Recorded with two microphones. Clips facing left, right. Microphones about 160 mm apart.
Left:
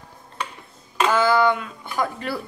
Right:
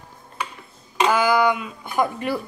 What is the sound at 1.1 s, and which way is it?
Speech, 15° right (ahead or behind).